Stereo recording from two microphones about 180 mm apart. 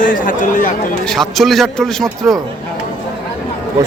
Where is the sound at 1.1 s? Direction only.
Centre (ahead or behind).